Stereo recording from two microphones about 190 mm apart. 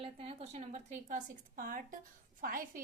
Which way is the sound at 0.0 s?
30° right (ahead or behind).